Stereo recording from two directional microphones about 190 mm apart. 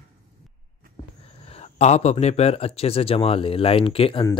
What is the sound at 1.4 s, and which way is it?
Speech, 35° left (ahead or behind).